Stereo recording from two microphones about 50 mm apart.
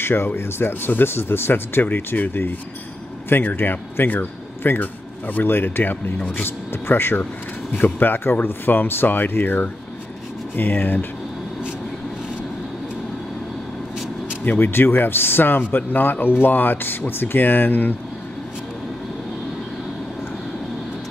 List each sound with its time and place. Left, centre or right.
0.0 s speech: left
6.1 s speech: left
6.4 s speech: left
14.4 s speech: left